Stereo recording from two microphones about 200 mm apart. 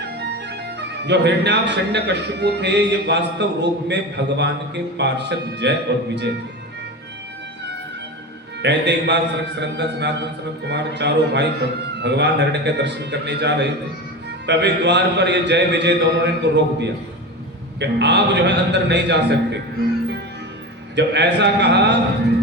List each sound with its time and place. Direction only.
0.3 s speech: 60° right (ahead or behind)
8.6 s speech: 60° right (ahead or behind)
20.9 s speech: 60° right (ahead or behind)